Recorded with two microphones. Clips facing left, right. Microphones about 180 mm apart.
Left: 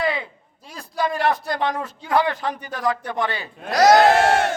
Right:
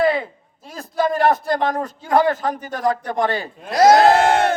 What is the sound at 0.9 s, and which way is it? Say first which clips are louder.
A man's voice: right 4 dB; 45° right (ahead or behind).